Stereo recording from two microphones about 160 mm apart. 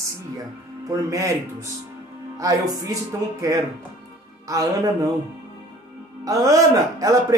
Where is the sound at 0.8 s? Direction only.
20° right (ahead or behind).